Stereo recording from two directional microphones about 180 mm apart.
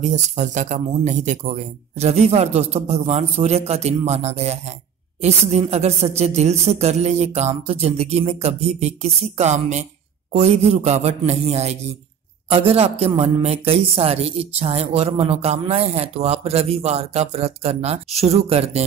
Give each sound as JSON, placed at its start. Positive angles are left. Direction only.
{"t": 0.0, "sound": "speech", "side_deg": -40}